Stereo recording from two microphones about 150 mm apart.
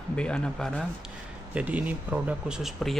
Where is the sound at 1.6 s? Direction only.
10° right (ahead or behind).